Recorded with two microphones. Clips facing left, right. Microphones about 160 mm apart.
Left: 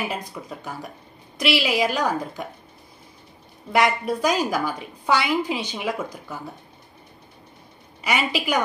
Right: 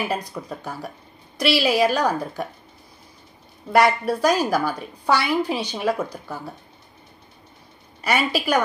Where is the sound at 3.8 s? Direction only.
15° left (ahead or behind).